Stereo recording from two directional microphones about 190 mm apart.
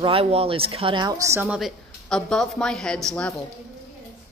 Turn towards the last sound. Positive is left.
turn(degrees=5)  # may be behind; listen again after turning